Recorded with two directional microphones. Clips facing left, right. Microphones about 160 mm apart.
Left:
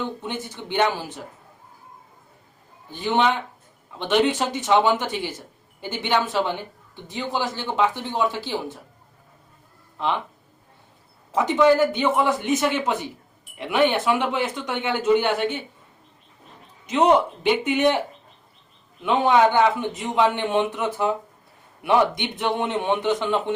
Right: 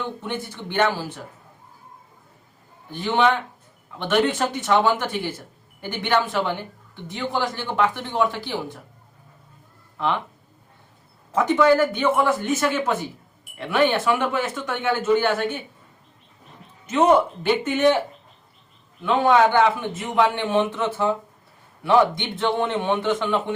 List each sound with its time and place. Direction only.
0.2 s a man's voice: 15° left (ahead or behind)
2.9 s a man's voice: 20° left (ahead or behind)
11.3 s a man's voice: 15° left (ahead or behind)
17.4 s a man's voice: 15° left (ahead or behind)
19.0 s a man's voice: 15° left (ahead or behind)